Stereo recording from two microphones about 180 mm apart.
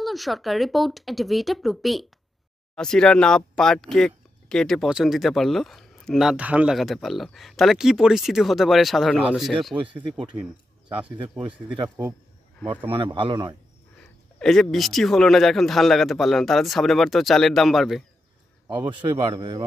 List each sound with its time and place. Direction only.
0.0 s speech: centre (ahead or behind)
12.9 s a man's voice: 30° right (ahead or behind)
14.4 s speech: centre (ahead or behind)
18.7 s a man's voice: 25° right (ahead or behind)